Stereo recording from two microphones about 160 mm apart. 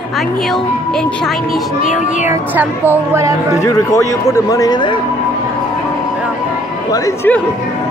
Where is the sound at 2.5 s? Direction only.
10° right (ahead or behind).